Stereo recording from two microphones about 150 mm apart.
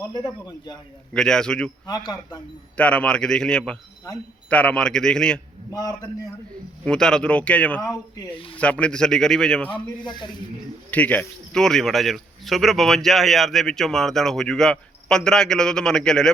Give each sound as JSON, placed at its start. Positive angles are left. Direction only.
{"t": 0.0, "sound": "a man's voice", "side_deg": 20}
{"t": 1.1, "sound": "speech", "side_deg": 5}
{"t": 1.9, "sound": "a man's voice", "side_deg": 25}
{"t": 2.7, "sound": "speech", "side_deg": 10}
{"t": 5.7, "sound": "a man's voice", "side_deg": 25}
{"t": 6.8, "sound": "speech", "side_deg": 5}
{"t": 9.7, "sound": "speech", "side_deg": 30}
{"t": 10.9, "sound": "speech", "side_deg": 10}